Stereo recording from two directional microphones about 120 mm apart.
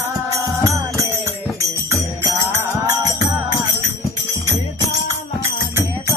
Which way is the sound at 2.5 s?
20° right (ahead or behind).